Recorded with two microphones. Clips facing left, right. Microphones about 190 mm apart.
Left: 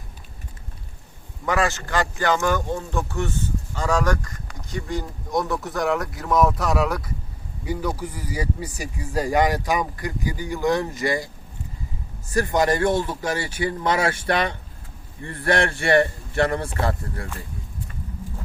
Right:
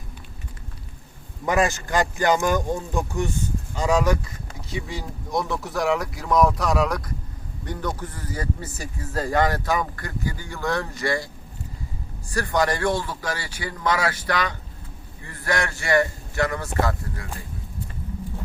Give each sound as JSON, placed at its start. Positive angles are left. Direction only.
{"t": 1.5, "sound": "a man's voice", "side_deg": -20}
{"t": 12.3, "sound": "a man's voice", "side_deg": 20}